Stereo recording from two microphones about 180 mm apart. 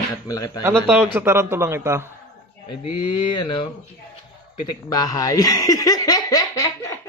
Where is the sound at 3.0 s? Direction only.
25° left (ahead or behind).